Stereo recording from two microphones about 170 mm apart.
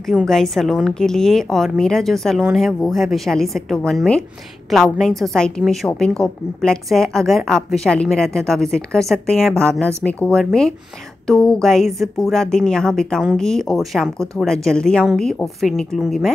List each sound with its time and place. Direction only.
0.0 s a woman's voice: centre (ahead or behind)